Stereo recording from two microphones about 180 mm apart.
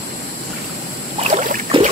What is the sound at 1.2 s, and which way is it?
Boat, 45° right (ahead or behind).